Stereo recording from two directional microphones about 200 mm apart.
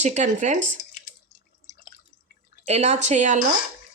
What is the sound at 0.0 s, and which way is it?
Speech, 35° right (ahead or behind).